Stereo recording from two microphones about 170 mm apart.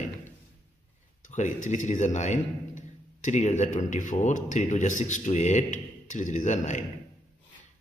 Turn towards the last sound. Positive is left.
turn(degrees=45)  # may be behind; listen again after turning